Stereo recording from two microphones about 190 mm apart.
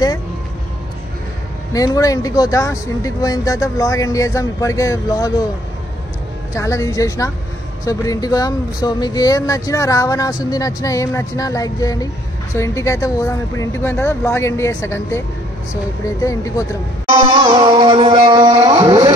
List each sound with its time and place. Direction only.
1.7 s speech: 20° left (ahead or behind)
6.5 s speech: 15° left (ahead or behind)
17.4 s speech: 25° right (ahead or behind)